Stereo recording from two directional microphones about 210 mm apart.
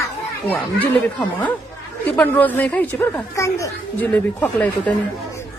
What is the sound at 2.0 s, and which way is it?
Speech, 10° left (ahead or behind).